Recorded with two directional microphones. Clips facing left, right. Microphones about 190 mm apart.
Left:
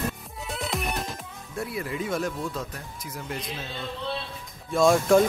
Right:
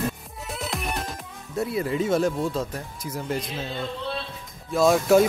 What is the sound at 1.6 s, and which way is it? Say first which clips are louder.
Speech: right 6 dB; 25° right (ahead or behind).